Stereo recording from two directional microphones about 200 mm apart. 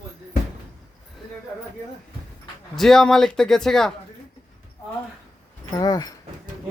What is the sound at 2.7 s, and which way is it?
Speech, centre (ahead or behind).